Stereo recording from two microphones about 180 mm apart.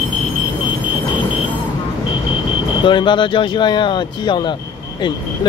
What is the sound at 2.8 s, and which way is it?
Speech, 25° left (ahead or behind).